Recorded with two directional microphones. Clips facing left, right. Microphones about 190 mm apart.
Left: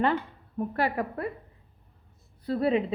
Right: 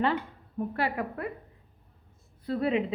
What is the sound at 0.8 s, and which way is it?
Speech, 35° left (ahead or behind).